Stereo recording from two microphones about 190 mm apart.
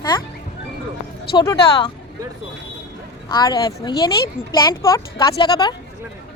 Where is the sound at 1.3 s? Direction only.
25° left (ahead or behind).